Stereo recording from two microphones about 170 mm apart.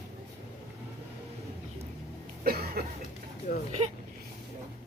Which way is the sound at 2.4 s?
65° right (ahead or behind).